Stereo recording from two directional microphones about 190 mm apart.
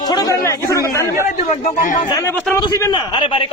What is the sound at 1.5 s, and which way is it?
Speech, 45° left (ahead or behind).